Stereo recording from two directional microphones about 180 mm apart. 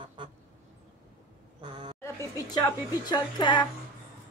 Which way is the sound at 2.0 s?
15° left (ahead or behind).